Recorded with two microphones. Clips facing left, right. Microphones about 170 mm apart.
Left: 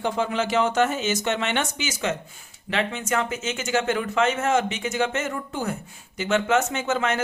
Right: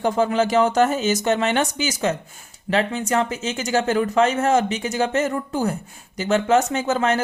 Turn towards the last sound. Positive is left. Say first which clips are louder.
# right 4 dB
turn(degrees=-35)  # may be behind; listen again after turning